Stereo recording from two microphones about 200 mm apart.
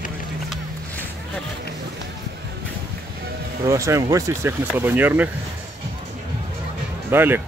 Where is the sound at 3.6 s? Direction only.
15° right (ahead or behind).